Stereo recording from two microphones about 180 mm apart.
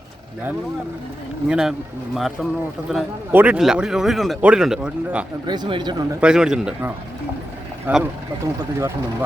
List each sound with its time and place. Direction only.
1.5 s speech: 5° right (ahead or behind)
5.5 s speech: 25° right (ahead or behind)
6.1 s speech: 5° right (ahead or behind)